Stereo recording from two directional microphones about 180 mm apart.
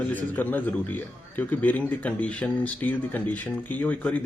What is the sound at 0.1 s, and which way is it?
Speech, 10° left (ahead or behind).